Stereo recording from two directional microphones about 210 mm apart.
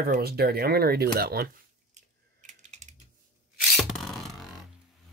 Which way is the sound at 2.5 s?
35° right (ahead or behind).